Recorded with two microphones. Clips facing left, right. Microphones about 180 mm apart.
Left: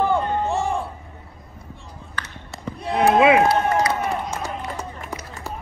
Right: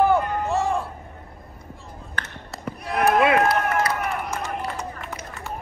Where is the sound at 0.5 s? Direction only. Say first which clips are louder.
Even; centre (ahead or behind).